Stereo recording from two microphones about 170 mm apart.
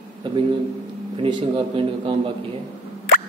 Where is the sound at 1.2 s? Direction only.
30° right (ahead or behind).